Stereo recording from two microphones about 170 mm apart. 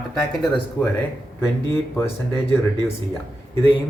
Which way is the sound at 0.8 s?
20° left (ahead or behind).